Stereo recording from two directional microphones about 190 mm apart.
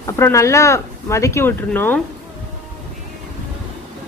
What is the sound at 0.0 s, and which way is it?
A woman's voice, 15° left (ahead or behind).